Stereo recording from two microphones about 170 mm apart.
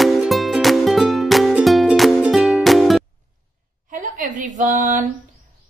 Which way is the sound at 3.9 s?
50° right (ahead or behind).